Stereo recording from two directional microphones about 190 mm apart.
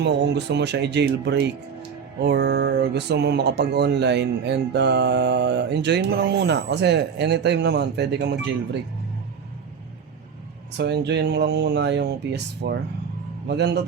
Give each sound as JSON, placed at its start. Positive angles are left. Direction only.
{"t": 0.0, "sound": "speech", "side_deg": -65}
{"t": 10.8, "sound": "speech", "side_deg": -60}